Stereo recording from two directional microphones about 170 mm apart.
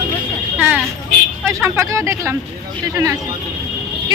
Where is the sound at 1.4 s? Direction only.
15° right (ahead or behind).